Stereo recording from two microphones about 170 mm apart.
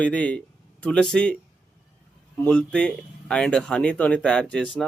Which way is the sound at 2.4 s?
5° left (ahead or behind).